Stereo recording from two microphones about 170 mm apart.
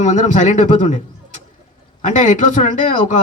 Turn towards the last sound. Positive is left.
turn(degrees=45)  # may be behind; listen again after turning